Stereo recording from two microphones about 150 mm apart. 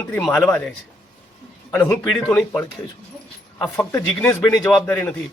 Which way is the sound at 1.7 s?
10° left (ahead or behind).